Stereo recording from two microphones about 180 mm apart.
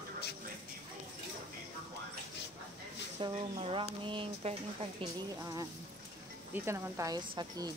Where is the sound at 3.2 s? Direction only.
30° right (ahead or behind).